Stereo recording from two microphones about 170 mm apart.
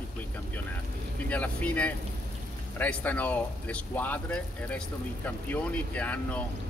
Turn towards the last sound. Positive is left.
turn(degrees=10)  # may be behind; listen again after turning